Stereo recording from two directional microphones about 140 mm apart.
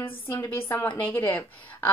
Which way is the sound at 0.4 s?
15° left (ahead or behind).